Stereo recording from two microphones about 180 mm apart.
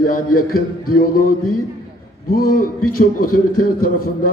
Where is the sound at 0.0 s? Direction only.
55° left (ahead or behind).